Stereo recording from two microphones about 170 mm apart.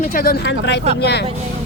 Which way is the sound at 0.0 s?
60° left (ahead or behind).